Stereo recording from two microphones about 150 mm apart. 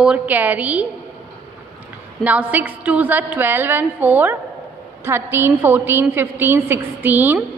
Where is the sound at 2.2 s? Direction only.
10° right (ahead or behind).